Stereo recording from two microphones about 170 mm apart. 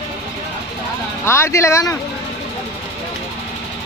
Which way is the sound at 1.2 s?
15° left (ahead or behind).